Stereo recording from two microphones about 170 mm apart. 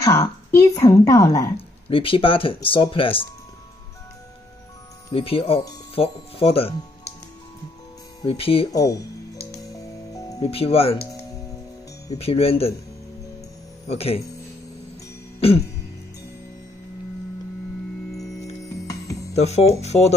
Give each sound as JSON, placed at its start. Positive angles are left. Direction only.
{"t": 0.0, "sound": "a woman's voice", "side_deg": 15}
{"t": 1.9, "sound": "speech", "side_deg": 30}
{"t": 5.1, "sound": "speech", "side_deg": 35}
{"t": 8.2, "sound": "speech", "side_deg": 35}
{"t": 9.5, "sound": "music", "side_deg": 20}
{"t": 10.4, "sound": "speech", "side_deg": 35}
{"t": 12.2, "sound": "speech", "side_deg": 35}
{"t": 13.8, "sound": "speech", "side_deg": 35}
{"t": 19.3, "sound": "speech", "side_deg": 40}